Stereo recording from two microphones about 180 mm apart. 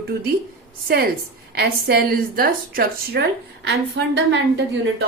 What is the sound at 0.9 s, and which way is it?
A woman's voice, 60° right (ahead or behind).